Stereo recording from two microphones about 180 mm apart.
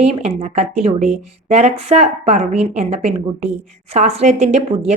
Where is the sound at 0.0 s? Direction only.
35° right (ahead or behind).